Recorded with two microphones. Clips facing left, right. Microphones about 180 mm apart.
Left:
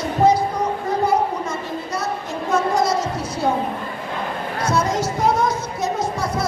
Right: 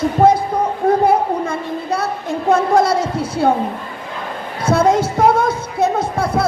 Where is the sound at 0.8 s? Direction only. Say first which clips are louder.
Right 7 dB; 55° right (ahead or behind).